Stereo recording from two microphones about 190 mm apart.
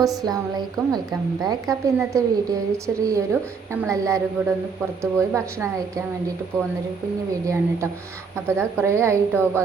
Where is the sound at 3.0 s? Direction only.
15° right (ahead or behind).